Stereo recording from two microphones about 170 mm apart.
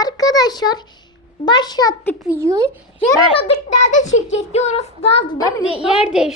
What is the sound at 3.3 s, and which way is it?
Child singing, 35° left (ahead or behind).